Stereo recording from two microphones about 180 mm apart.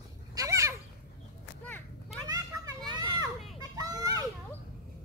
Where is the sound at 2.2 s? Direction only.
20° right (ahead or behind).